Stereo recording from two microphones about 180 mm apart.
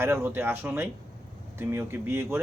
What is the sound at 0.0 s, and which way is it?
Speech, 15° right (ahead or behind).